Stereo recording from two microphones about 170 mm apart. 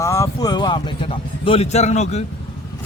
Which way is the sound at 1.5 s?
40° left (ahead or behind).